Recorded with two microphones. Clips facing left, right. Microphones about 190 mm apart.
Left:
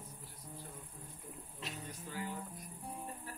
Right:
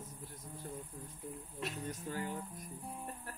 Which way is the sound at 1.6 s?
45° right (ahead or behind).